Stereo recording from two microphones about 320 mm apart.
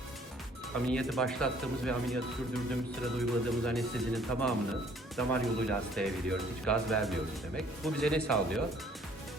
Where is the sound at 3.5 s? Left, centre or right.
Centre.